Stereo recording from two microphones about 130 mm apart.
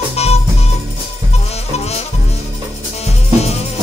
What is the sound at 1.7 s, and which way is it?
Music, 55° left (ahead or behind).